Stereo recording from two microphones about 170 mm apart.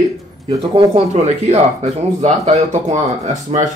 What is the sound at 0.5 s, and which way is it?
Speech, 25° right (ahead or behind).